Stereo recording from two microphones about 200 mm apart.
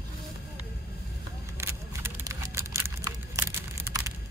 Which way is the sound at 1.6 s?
10° right (ahead or behind).